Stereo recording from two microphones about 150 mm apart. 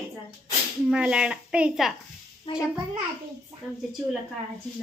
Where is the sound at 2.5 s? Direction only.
35° left (ahead or behind).